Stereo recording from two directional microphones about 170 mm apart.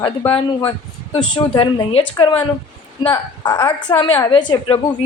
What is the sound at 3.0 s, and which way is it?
A woman's voice, 30° left (ahead or behind).